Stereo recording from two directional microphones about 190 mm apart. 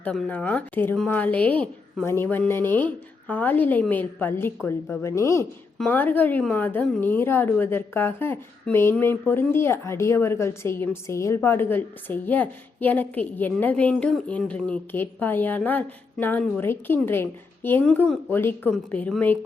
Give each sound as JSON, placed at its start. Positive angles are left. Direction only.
{"t": 0.0, "sound": "a woman's voice", "side_deg": 10}